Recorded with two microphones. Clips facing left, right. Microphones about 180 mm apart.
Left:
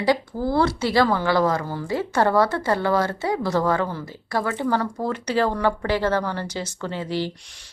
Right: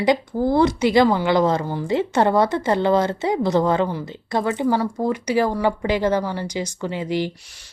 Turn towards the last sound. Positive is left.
turn(degrees=-15)  # may be behind; listen again after turning